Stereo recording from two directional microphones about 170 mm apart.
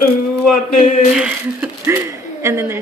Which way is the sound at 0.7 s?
50° left (ahead or behind).